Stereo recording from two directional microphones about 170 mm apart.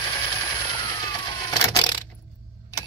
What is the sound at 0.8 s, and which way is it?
Vehicle, 25° left (ahead or behind).